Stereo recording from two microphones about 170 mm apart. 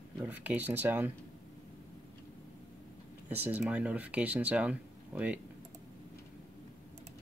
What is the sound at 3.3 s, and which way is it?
Speech, 10° right (ahead or behind).